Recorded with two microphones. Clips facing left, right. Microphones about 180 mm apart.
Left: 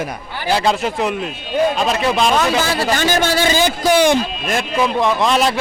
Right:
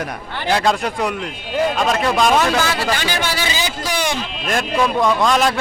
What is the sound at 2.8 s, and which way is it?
A man's voice, 45° left (ahead or behind).